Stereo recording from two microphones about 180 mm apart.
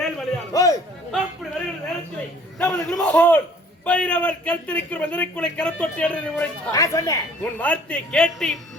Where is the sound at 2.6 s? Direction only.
5° left (ahead or behind).